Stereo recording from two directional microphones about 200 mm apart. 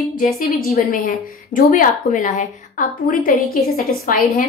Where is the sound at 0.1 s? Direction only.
45° left (ahead or behind).